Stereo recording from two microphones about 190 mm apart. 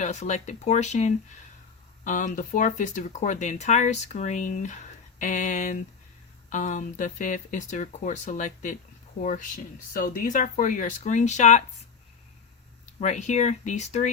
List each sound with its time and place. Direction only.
0.0 s speech: 40° left (ahead or behind)
5.2 s a sound: 40° left (ahead or behind)
6.5 s speech: 40° left (ahead or behind)
13.0 s speech: 40° left (ahead or behind)